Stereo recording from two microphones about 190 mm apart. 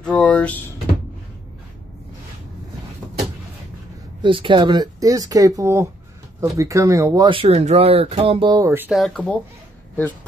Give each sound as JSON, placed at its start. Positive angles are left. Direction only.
{"t": 0.0, "sound": "a sound", "side_deg": 5}
{"t": 4.2, "sound": "speech", "side_deg": -25}
{"t": 7.2, "sound": "speech", "side_deg": -30}
{"t": 8.9, "sound": "speech", "side_deg": 5}